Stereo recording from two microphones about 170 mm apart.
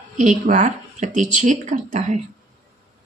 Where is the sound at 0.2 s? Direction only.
45° right (ahead or behind).